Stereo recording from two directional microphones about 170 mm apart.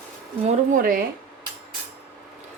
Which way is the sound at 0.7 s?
55° right (ahead or behind).